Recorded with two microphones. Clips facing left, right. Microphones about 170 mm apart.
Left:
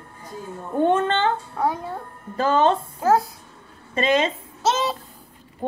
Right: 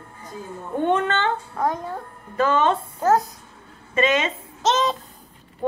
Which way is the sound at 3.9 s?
35° left (ahead or behind).